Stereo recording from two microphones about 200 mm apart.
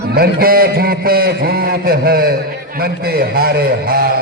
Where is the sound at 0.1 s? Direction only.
50° right (ahead or behind).